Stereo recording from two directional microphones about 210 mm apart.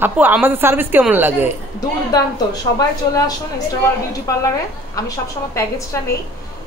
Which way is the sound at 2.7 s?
20° left (ahead or behind).